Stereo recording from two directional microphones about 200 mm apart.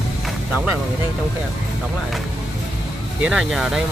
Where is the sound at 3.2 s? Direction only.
5° right (ahead or behind).